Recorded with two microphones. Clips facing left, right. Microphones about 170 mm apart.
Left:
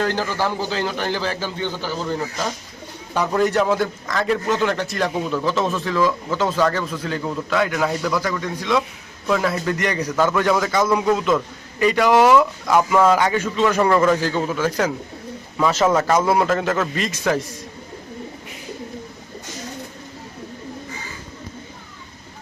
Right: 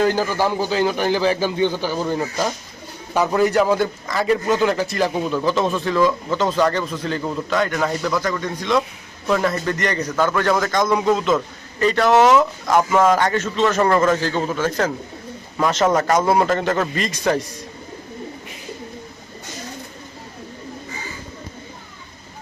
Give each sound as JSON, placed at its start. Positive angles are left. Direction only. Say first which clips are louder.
{"t": 0.0, "sound": "a man's voice", "louder": "right 3 dB", "side_deg": -10}
{"t": 3.2, "sound": "a man's voice", "louder": "right 2 dB", "side_deg": -5}
{"t": 12.6, "sound": "a man's voice", "louder": "even", "side_deg": -10}
{"t": 13.1, "sound": "a man's voice", "louder": "even", "side_deg": 10}
{"t": 14.3, "sound": "a man's voice", "louder": "even", "side_deg": -25}
{"t": 14.6, "sound": "a man's voice", "louder": "even", "side_deg": 10}
{"t": 16.0, "sound": "a man's voice", "louder": "right 1 dB", "side_deg": 5}